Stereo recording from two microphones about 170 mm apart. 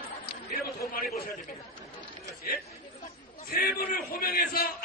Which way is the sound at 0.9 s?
65° left (ahead or behind).